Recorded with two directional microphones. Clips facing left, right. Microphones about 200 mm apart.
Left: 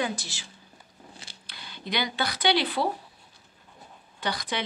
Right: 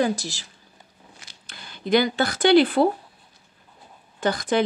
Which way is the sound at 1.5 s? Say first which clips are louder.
Right 11 dB; 50° right (ahead or behind).